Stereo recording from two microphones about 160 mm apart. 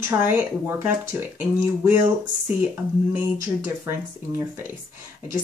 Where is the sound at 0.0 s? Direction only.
15° right (ahead or behind).